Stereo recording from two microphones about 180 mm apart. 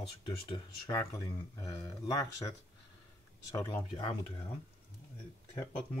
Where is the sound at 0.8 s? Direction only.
20° left (ahead or behind).